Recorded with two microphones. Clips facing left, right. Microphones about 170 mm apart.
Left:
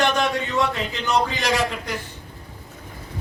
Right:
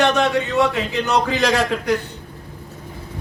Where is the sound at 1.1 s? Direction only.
65° right (ahead or behind).